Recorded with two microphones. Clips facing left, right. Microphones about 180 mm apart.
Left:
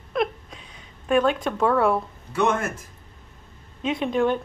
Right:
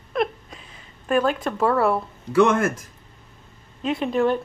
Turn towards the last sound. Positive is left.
turn(degrees=-5)  # may be behind; listen again after turning